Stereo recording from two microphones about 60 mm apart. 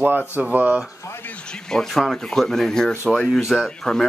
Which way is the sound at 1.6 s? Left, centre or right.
Centre.